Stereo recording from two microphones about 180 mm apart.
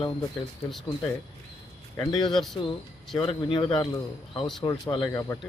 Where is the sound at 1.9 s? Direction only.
25° left (ahead or behind).